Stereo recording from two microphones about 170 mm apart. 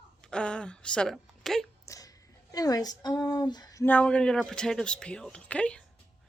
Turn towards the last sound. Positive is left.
turn(degrees=5)  # may be behind; listen again after turning